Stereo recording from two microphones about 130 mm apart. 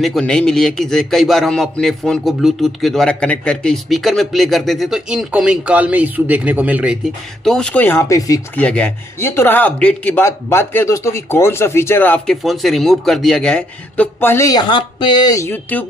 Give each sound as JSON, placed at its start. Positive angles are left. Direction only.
{"t": 0.0, "sound": "a man's voice", "side_deg": 5}
{"t": 7.4, "sound": "speech", "side_deg": 5}
{"t": 8.5, "sound": "speech", "side_deg": 10}
{"t": 12.4, "sound": "a man's voice", "side_deg": 0}
{"t": 14.5, "sound": "speech", "side_deg": 35}